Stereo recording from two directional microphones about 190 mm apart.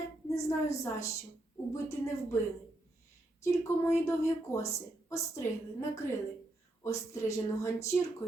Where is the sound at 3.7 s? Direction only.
15° left (ahead or behind).